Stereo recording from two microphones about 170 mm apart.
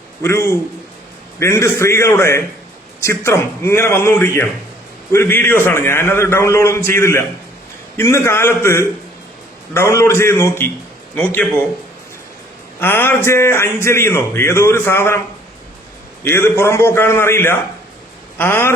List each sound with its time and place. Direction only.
0.2 s a man's voice: 15° left (ahead or behind)
12.8 s a man's voice: 10° left (ahead or behind)
16.2 s a man's voice: 15° left (ahead or behind)